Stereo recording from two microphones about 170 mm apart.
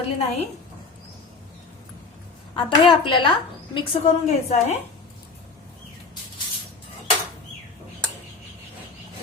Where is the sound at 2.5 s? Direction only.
30° left (ahead or behind).